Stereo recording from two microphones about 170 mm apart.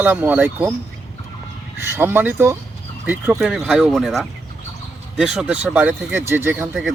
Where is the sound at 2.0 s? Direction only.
10° right (ahead or behind).